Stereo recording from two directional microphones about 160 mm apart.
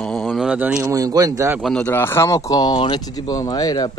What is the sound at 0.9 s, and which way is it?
Speech, 20° right (ahead or behind).